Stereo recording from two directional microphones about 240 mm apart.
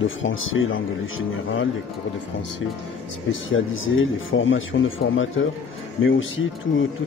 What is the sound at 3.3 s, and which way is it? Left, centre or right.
Speech, left.